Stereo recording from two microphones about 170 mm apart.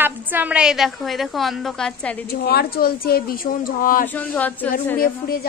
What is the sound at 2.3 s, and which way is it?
Speech, 65° left (ahead or behind).